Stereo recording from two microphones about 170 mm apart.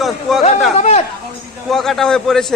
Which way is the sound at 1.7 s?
Centre (ahead or behind).